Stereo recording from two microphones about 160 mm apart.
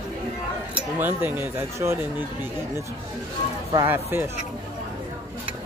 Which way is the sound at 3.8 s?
15° right (ahead or behind).